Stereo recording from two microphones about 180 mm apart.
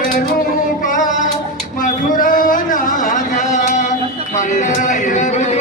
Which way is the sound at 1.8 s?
50° left (ahead or behind).